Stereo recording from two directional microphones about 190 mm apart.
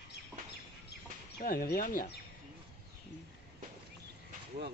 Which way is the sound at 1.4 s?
50° left (ahead or behind).